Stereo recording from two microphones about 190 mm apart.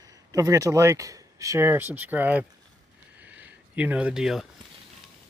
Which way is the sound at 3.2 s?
10° right (ahead or behind).